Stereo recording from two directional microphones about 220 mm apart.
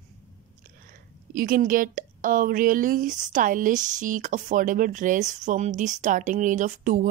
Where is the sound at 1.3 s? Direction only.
40° right (ahead or behind).